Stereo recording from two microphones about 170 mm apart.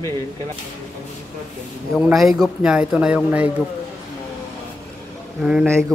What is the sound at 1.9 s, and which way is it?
A man's voice, centre (ahead or behind).